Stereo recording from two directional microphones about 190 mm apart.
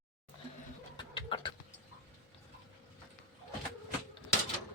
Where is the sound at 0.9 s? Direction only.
25° left (ahead or behind).